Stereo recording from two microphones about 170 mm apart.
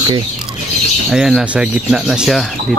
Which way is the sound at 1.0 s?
5° right (ahead or behind).